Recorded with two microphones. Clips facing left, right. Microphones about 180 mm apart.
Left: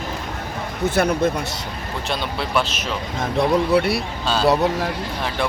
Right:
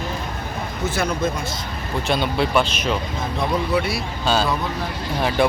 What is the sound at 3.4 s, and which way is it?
Speech, 70° left (ahead or behind).